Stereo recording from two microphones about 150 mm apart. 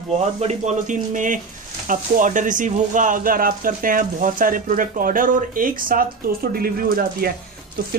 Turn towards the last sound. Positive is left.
turn(degrees=-80)